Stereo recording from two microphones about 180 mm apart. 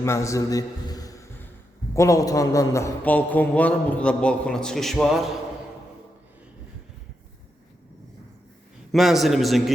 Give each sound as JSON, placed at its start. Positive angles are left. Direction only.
{"t": 0.0, "sound": "a sound", "side_deg": 15}
{"t": 1.9, "sound": "a man's voice", "side_deg": 15}
{"t": 8.9, "sound": "a man's voice", "side_deg": 0}